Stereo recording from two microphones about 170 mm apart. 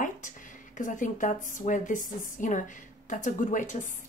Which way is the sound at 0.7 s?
50° left (ahead or behind).